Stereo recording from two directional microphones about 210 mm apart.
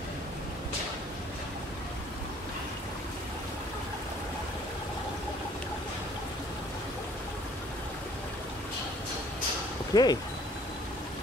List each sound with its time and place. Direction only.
9.9 s speech: 20° left (ahead or behind)